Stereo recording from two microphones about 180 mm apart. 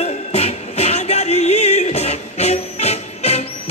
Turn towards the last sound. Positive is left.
turn(degrees=35)  # may be behind; listen again after turning